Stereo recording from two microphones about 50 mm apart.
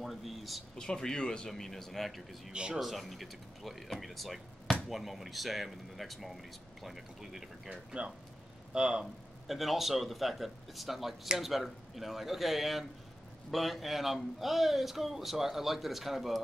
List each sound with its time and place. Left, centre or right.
0.0 s speech: centre
0.7 s speech: centre
1.5 s speech: centre
2.5 s speech: right
2.8 s speech: centre
8.7 s speech: centre
9.0 s speech: centre